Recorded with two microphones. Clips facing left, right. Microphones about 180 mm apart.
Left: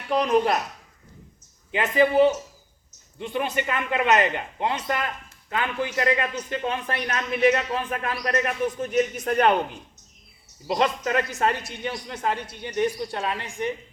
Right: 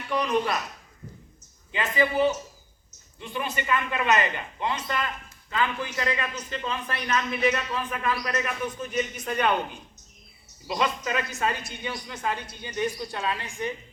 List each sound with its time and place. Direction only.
0.3 s speech: 50° left (ahead or behind)
1.7 s a man's voice: 60° left (ahead or behind)
10.7 s speech: 50° left (ahead or behind)
12.7 s a woman's voice: 25° left (ahead or behind)